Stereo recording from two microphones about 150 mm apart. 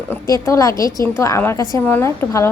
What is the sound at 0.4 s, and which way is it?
A woman's voice, 20° left (ahead or behind).